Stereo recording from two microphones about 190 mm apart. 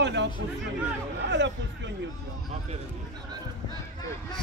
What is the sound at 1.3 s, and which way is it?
Speech, 65° right (ahead or behind).